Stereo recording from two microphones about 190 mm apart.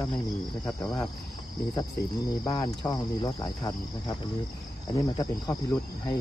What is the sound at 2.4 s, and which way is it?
Cricket, 20° left (ahead or behind).